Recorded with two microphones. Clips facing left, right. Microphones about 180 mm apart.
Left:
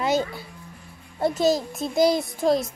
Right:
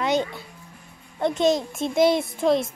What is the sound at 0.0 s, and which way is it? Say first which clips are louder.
A child's voice: even; 5° left (ahead or behind).